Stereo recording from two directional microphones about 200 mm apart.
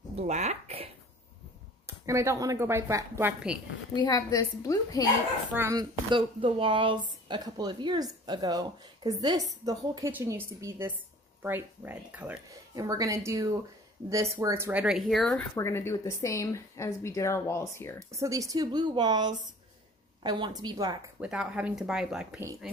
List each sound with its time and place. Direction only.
0.1 s a sound: 35° right (ahead or behind)
1.9 s speech: 15° right (ahead or behind)
3.9 s speech: 20° left (ahead or behind)
5.5 s speech: 15° right (ahead or behind)
15.5 s speech: 10° left (ahead or behind)
18.1 s speech: 15° right (ahead or behind)
21.2 s speech: 5° right (ahead or behind)